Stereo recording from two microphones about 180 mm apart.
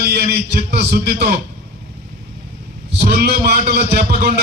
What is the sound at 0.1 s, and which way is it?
A man's voice, 60° right (ahead or behind).